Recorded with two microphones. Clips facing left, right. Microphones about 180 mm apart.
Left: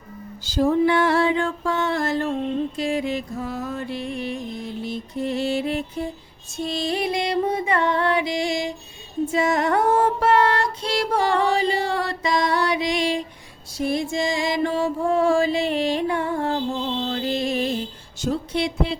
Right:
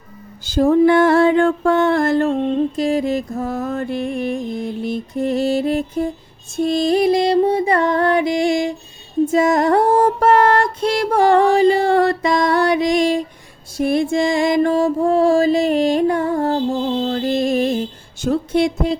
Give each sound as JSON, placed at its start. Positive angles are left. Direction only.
{"t": 0.4, "sound": "music", "side_deg": -50}
{"t": 2.7, "sound": "music", "side_deg": -40}
{"t": 13.7, "sound": "music", "side_deg": -55}